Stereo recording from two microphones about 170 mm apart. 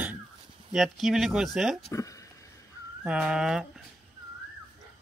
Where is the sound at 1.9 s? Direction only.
20° left (ahead or behind).